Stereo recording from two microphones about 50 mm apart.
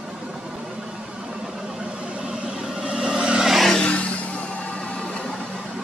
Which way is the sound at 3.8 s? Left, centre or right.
Left.